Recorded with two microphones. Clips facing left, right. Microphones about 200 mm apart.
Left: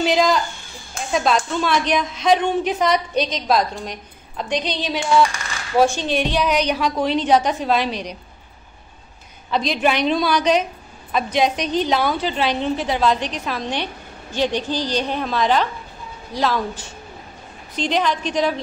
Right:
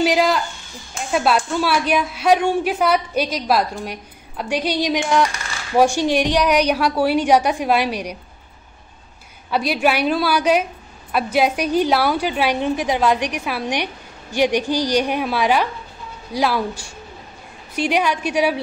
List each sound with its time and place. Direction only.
0.0 s a sound: 10° right (ahead or behind)
1.1 s a woman's voice: 5° right (ahead or behind)
9.5 s a woman's voice: 10° right (ahead or behind)